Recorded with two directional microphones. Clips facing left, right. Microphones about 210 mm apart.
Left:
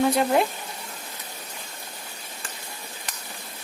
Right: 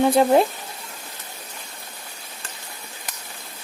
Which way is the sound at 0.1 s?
35° right (ahead or behind).